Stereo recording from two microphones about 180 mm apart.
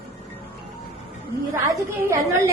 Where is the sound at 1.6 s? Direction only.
15° right (ahead or behind).